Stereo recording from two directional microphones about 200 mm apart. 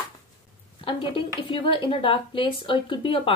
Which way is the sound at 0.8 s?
25° left (ahead or behind).